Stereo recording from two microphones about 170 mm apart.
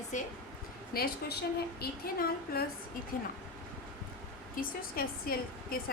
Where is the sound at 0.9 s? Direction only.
65° left (ahead or behind).